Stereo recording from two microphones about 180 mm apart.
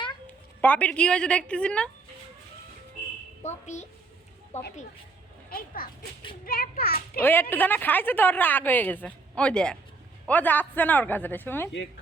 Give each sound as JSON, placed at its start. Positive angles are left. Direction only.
{"t": 0.6, "sound": "a woman's voice", "side_deg": 10}
{"t": 3.4, "sound": "a woman's voice", "side_deg": 40}
{"t": 5.5, "sound": "a child's voice", "side_deg": 55}
{"t": 7.2, "sound": "a woman's voice", "side_deg": 10}